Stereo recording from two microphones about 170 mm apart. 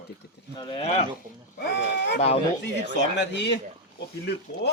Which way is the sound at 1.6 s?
90° left.